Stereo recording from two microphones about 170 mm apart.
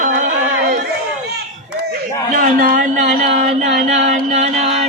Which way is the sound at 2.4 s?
50° right (ahead or behind).